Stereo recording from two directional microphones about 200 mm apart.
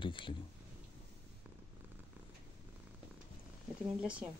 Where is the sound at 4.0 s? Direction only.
5° right (ahead or behind).